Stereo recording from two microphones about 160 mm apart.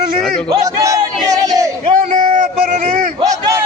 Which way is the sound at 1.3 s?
20° right (ahead or behind).